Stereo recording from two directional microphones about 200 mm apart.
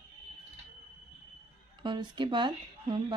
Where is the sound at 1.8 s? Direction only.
25° right (ahead or behind).